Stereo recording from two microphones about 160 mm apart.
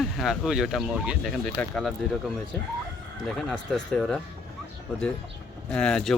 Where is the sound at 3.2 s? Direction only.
5° left (ahead or behind).